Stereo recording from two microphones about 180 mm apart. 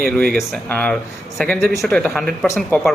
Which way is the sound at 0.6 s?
5° left (ahead or behind).